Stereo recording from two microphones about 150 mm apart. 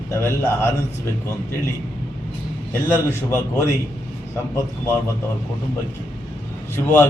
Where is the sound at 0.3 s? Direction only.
15° left (ahead or behind).